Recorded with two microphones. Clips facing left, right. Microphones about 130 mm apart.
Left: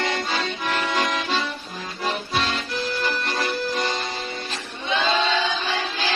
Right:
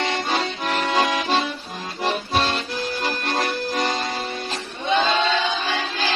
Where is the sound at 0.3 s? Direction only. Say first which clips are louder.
Right 2 dB; 35° right (ahead or behind).